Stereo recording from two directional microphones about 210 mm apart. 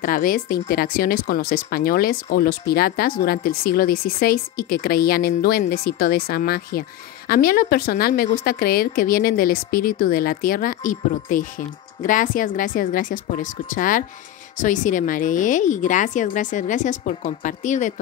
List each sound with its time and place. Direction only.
0.0 s a woman's voice: 40° left (ahead or behind)